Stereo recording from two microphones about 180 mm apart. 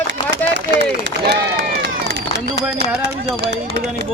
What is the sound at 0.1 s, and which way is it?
Run, 70° right (ahead or behind).